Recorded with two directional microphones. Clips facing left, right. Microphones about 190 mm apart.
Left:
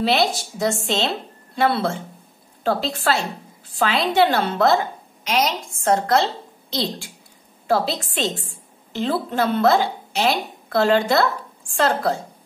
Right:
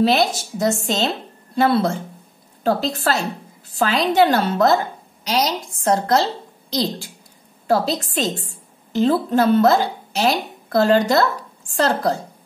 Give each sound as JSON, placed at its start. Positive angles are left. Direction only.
{"t": 0.0, "sound": "a woman's voice", "side_deg": -45}